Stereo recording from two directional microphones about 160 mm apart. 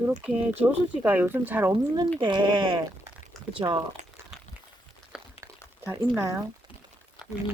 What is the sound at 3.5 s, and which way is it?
Speech, 30° right (ahead or behind).